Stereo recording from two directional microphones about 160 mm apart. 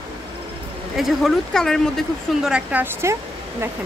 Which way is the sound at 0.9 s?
Centre (ahead or behind).